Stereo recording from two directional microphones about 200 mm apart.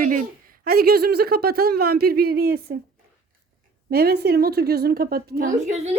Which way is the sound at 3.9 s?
50° right (ahead or behind).